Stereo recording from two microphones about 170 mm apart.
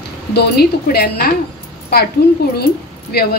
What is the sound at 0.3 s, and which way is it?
A woman's voice, 70° left (ahead or behind).